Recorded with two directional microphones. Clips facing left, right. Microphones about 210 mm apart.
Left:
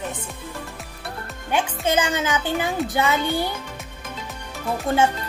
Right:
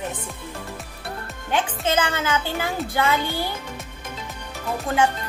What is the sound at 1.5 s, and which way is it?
Speech, 15° left (ahead or behind).